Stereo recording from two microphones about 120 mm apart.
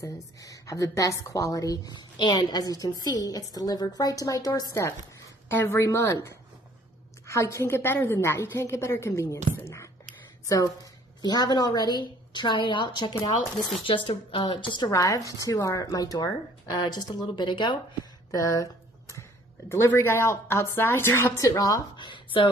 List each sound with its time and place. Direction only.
0.4 s a woman's voice: 30° left (ahead or behind)
10.4 s a woman's voice: 25° left (ahead or behind); by 14.9 s 45° left (ahead or behind)
14.9 s a woman's voice: 30° left (ahead or behind)
18.3 s speech: 25° left (ahead or behind)
19.7 s speech: 20° left (ahead or behind); by 22.5 s 45° left (ahead or behind)